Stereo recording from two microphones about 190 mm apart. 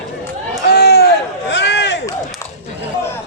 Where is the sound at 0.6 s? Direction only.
60° left (ahead or behind).